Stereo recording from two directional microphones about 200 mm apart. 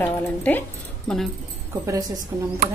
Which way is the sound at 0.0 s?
10° left (ahead or behind).